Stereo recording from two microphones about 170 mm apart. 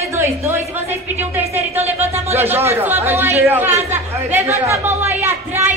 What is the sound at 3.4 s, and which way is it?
Chatter, 10° right (ahead or behind).